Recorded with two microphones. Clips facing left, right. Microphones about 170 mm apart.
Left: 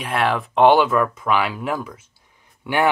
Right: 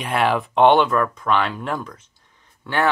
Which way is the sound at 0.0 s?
Centre (ahead or behind).